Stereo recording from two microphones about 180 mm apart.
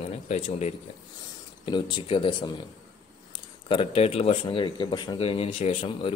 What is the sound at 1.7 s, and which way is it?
Speech, 25° left (ahead or behind).